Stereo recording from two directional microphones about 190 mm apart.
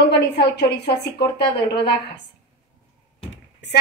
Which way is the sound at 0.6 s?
60° left (ahead or behind).